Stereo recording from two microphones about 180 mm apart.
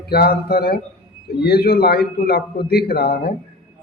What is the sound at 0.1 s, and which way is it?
A man's voice, 60° left (ahead or behind).